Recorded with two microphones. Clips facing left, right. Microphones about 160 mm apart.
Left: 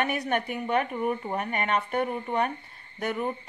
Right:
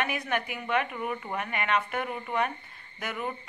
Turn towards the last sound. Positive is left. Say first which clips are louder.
# left 5 dB
turn(degrees=35)  # may be behind; listen again after turning